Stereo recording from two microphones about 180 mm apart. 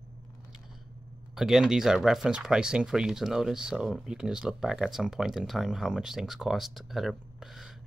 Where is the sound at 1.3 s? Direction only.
Centre (ahead or behind).